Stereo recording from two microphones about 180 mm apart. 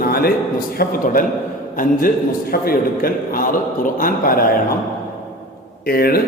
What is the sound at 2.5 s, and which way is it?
A man's voice, 55° left (ahead or behind).